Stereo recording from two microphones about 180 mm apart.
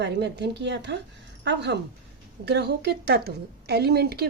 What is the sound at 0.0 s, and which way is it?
A woman's voice, 70° right (ahead or behind).